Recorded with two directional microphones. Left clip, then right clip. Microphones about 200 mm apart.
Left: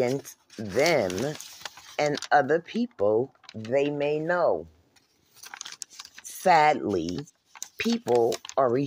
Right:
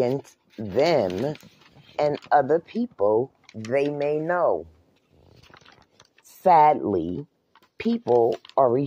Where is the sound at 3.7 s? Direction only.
10° right (ahead or behind).